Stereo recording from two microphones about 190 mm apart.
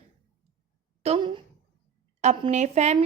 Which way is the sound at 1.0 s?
30° right (ahead or behind).